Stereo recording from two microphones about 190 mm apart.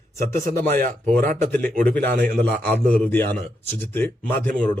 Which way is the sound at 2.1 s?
60° right (ahead or behind).